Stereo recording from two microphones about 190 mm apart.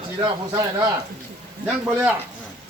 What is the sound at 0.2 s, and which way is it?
Speech, 20° right (ahead or behind).